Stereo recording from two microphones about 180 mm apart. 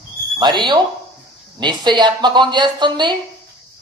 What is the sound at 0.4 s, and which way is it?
Speech, 25° right (ahead or behind).